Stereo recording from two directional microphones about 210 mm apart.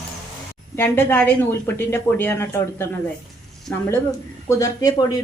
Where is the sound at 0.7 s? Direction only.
10° left (ahead or behind).